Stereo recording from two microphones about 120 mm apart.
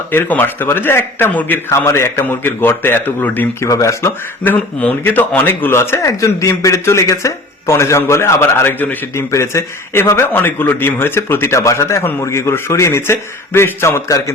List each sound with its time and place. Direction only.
0.1 s a man's voice: 15° left (ahead or behind)
3.7 s a man's voice: 25° left (ahead or behind)